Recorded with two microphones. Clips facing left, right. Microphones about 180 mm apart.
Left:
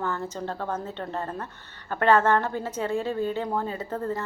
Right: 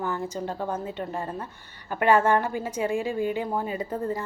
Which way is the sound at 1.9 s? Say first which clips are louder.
Even; 10° right (ahead or behind).